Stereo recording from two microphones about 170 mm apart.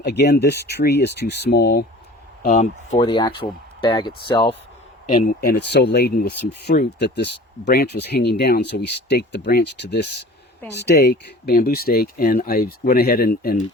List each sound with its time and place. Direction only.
0.0 s speech: 75° left (ahead or behind)
2.4 s speech: 45° left (ahead or behind)
3.0 s speech: 25° left (ahead or behind)
5.0 s speech: 50° left (ahead or behind); by 7.3 s 80° left
7.6 s speech: 65° left (ahead or behind)